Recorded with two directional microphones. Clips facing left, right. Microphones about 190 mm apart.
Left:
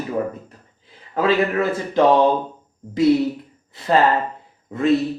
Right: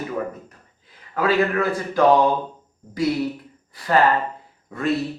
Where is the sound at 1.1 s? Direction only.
25° left (ahead or behind).